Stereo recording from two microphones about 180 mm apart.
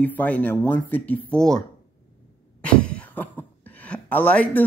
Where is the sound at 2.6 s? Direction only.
5° left (ahead or behind).